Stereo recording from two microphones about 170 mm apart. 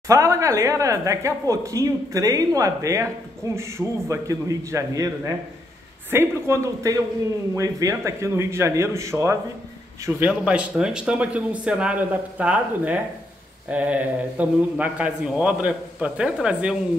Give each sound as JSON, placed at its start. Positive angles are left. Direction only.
{"t": 0.1, "sound": "a man's voice", "side_deg": -20}